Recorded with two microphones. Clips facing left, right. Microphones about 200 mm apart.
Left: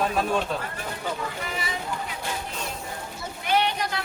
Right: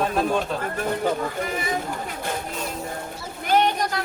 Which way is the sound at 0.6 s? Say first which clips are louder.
Right 8 dB; 50° right (ahead or behind).